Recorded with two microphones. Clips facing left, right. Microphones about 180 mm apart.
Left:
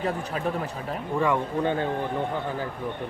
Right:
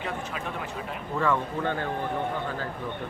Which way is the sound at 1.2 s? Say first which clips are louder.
Left 2 dB; 15° left (ahead or behind).